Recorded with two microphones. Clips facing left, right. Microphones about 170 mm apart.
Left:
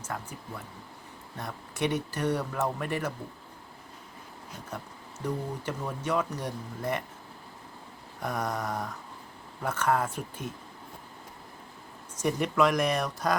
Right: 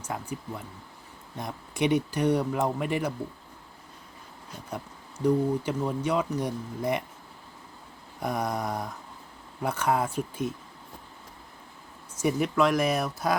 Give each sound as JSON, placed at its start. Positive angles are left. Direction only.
{"t": 0.0, "sound": "speech", "side_deg": -10}
{"t": 1.4, "sound": "speech", "side_deg": -10}
{"t": 4.7, "sound": "speech", "side_deg": -10}
{"t": 8.2, "sound": "speech", "side_deg": -10}
{"t": 12.1, "sound": "speech", "side_deg": -5}